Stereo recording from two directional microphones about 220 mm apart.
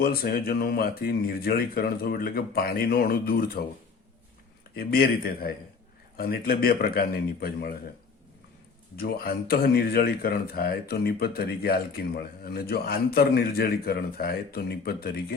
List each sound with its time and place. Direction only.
0.0 s speech: 45° left (ahead or behind)
4.7 s speech: 45° left (ahead or behind)
9.0 s speech: 45° left (ahead or behind)